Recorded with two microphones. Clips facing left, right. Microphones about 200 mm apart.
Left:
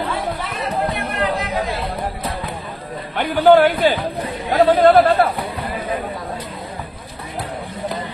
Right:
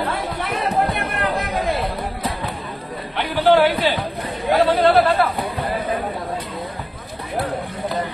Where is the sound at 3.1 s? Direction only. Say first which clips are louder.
Left 4 dB; 45° left (ahead or behind).